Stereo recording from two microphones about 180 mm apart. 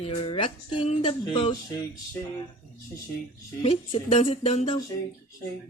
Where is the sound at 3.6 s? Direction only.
35° left (ahead or behind).